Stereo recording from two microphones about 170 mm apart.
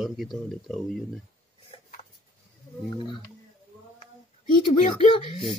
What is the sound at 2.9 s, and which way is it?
Speech, 30° left (ahead or behind).